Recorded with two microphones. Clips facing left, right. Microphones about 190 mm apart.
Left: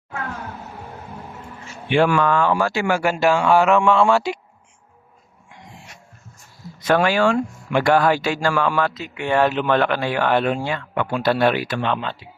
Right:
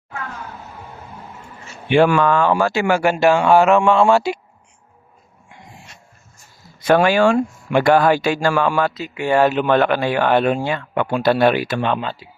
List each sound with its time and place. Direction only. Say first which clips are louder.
1.9 s speech: right 3 dB; 20° right (ahead or behind)
2.9 s speech: right 4 dB; 60° right (ahead or behind)
3.6 s speech: right 2 dB; 25° right (ahead or behind)
6.7 s speech: right 3 dB; 15° right (ahead or behind)